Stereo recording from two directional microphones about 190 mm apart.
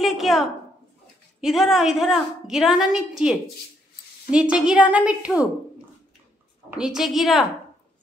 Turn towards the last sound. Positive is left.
turn(degrees=0)  # may be behind; listen again after turning